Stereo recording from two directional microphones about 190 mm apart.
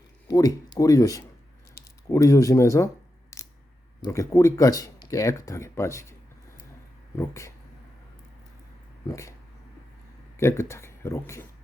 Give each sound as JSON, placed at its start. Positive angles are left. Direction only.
{"t": 0.3, "sound": "speech", "side_deg": 20}
{"t": 7.2, "sound": "speech", "side_deg": 15}
{"t": 9.0, "sound": "speech", "side_deg": 15}
{"t": 10.3, "sound": "speech", "side_deg": 15}